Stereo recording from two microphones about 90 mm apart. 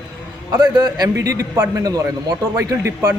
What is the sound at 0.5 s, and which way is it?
A man's voice, 50° right (ahead or behind).